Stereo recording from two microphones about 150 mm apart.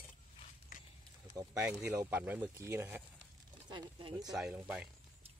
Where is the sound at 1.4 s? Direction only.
20° right (ahead or behind).